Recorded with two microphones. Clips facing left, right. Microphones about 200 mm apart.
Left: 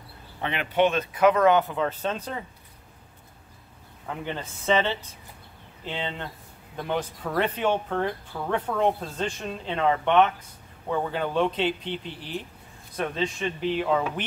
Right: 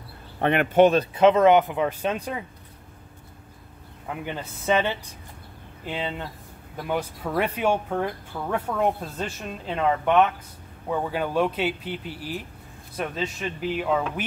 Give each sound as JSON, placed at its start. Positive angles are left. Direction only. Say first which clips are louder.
{"t": 0.4, "sound": "speech", "louder": "right 6 dB", "side_deg": -55}
{"t": 1.1, "sound": "speech", "louder": "left 1 dB", "side_deg": -25}
{"t": 4.1, "sound": "speech", "louder": "even", "side_deg": -5}